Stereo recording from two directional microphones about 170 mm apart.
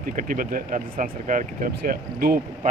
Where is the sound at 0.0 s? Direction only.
55° right (ahead or behind).